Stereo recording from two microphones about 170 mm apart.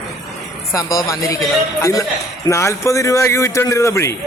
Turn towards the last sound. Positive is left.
turn(degrees=15)  # may be behind; listen again after turning